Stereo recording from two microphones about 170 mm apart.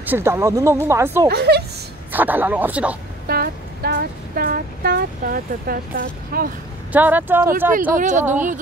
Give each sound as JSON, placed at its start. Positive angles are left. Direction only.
{"t": 0.0, "sound": "speech", "side_deg": -15}
{"t": 1.3, "sound": "speech", "side_deg": -70}
{"t": 2.1, "sound": "speech", "side_deg": -10}
{"t": 3.3, "sound": "a sound", "side_deg": -65}
{"t": 6.9, "sound": "speech", "side_deg": -10}
{"t": 7.9, "sound": "speech", "side_deg": -45}